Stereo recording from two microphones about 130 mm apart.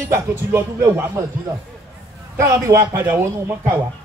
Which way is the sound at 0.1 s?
20° right (ahead or behind).